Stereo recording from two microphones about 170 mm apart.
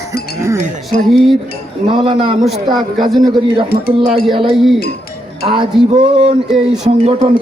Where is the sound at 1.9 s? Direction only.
30° right (ahead or behind).